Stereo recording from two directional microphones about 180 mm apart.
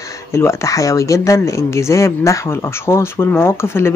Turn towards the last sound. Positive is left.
turn(degrees=15)  # may be behind; listen again after turning